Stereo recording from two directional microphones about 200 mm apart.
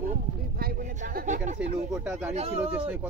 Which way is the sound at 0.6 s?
45° right (ahead or behind).